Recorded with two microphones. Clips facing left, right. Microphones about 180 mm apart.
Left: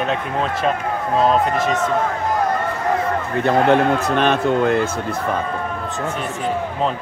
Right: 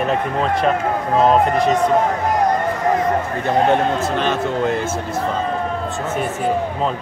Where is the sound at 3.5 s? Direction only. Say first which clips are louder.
Left 2 dB; 65° left (ahead or behind).